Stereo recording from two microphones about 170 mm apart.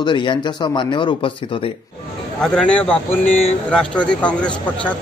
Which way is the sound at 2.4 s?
5° left (ahead or behind).